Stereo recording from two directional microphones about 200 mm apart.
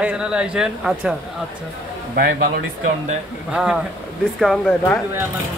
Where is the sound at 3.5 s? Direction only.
5° right (ahead or behind).